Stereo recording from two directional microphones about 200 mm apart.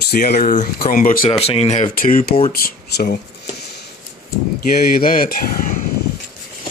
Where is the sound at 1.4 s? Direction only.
30° left (ahead or behind); by 3.2 s 50° left (ahead or behind).